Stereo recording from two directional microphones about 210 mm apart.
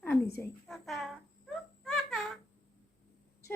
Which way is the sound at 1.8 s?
Centre (ahead or behind).